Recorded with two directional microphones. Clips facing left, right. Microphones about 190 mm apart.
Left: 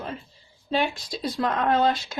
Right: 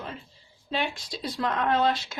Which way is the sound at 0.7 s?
40° left (ahead or behind).